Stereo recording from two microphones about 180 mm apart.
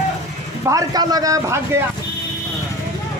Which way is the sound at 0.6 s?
20° right (ahead or behind).